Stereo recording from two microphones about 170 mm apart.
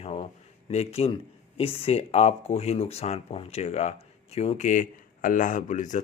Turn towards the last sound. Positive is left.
turn(degrees=45)  # may be behind; listen again after turning